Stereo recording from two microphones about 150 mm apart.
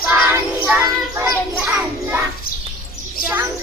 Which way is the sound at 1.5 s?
5° right (ahead or behind).